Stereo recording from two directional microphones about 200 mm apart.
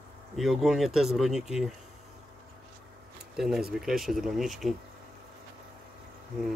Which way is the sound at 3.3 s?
Centre (ahead or behind).